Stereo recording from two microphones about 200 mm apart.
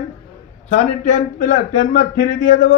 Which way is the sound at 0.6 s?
35° left (ahead or behind).